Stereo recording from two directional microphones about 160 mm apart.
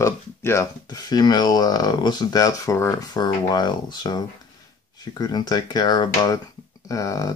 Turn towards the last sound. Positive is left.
turn(degrees=20)  # may be behind; listen again after turning